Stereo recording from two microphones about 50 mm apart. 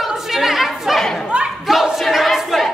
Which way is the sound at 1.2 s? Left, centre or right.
Right.